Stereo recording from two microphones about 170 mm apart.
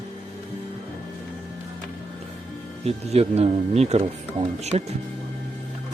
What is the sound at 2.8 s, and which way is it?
Speech, 35° right (ahead or behind).